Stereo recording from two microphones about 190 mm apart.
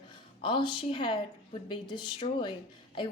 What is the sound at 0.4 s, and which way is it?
A woman's voice, 25° left (ahead or behind).